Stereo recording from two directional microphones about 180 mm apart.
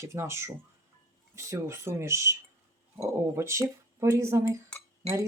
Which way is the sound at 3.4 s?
15° right (ahead or behind).